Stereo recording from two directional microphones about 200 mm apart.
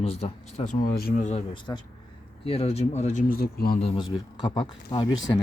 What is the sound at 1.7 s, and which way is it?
Speech, 20° left (ahead or behind).